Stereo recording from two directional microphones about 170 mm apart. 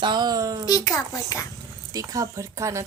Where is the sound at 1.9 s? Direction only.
20° right (ahead or behind).